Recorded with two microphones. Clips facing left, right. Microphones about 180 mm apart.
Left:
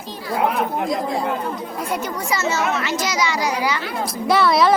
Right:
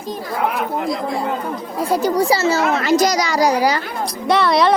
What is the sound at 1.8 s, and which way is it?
Speech, 35° right (ahead or behind).